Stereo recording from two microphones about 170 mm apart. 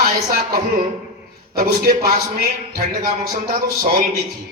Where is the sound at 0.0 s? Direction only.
60° right (ahead or behind).